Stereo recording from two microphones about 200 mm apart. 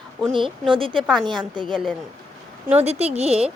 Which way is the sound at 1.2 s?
20° right (ahead or behind).